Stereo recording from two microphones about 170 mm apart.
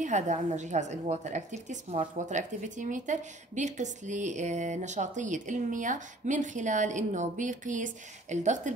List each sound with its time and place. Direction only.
0.0 s a woman's voice: 45° right (ahead or behind)